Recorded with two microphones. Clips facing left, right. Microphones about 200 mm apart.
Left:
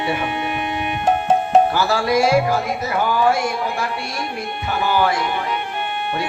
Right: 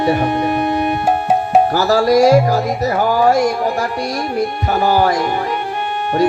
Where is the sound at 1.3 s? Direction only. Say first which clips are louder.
Right 1 dB; 10° right (ahead or behind).